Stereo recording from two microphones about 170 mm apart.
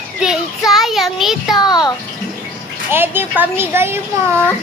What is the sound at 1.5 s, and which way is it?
Speech, 25° left (ahead or behind).